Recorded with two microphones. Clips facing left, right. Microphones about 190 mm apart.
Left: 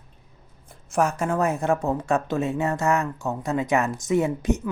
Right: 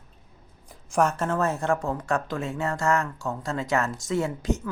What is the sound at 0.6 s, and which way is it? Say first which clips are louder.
A woman's voice: even; 5° left (ahead or behind).